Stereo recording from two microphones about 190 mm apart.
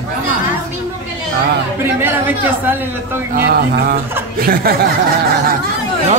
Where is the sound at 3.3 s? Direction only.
55° right (ahead or behind).